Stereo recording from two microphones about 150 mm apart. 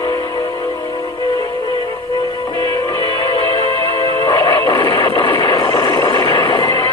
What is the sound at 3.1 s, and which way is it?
Music, 35° left (ahead or behind).